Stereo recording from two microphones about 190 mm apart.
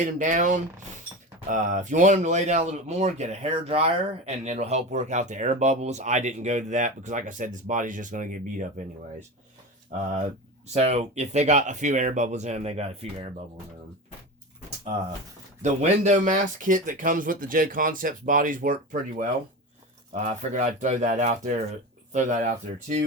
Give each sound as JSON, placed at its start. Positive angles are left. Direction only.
{"t": 0.0, "sound": "speech", "side_deg": -40}
{"t": 9.9, "sound": "speech", "side_deg": -40}
{"t": 15.6, "sound": "speech", "side_deg": -40}